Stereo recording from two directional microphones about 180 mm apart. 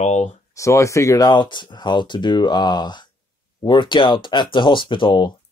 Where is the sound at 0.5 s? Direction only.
15° left (ahead or behind).